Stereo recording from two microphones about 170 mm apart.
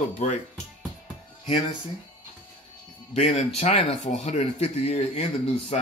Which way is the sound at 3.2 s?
35° left (ahead or behind).